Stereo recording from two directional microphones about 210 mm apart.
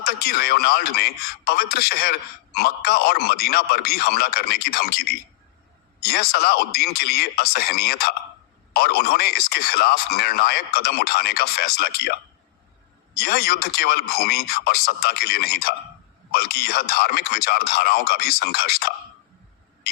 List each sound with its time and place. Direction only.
0.0 s a man's voice: 50° left (ahead or behind)
13.1 s a man's voice: 50° left (ahead or behind)